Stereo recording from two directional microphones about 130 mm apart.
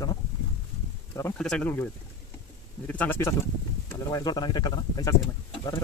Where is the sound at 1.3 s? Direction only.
5° left (ahead or behind).